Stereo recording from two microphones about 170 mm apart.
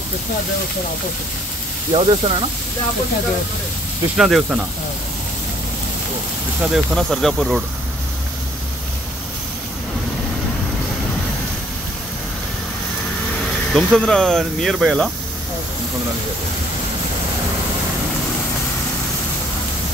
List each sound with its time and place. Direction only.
1.9 s speech: 35° right (ahead or behind)
4.2 s speech: centre (ahead or behind)
6.6 s speech: 5° right (ahead or behind)
13.7 s speech: 5° left (ahead or behind)